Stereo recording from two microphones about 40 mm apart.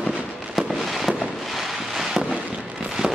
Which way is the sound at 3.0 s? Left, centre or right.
Centre.